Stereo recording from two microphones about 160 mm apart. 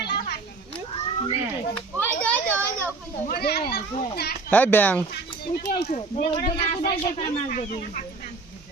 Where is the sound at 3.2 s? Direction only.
80° left.